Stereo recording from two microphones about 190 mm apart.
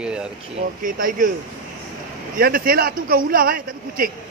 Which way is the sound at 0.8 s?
45° right (ahead or behind).